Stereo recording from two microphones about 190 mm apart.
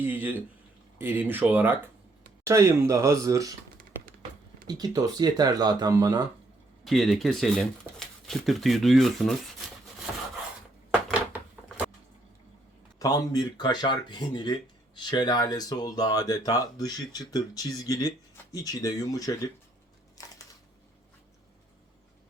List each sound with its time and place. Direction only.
0.0 s speech: 10° right (ahead or behind)
4.6 s speech: 20° right (ahead or behind)
6.8 s speech: centre (ahead or behind)
13.0 s speech: 20° left (ahead or behind)
20.2 s a sound: 20° left (ahead or behind)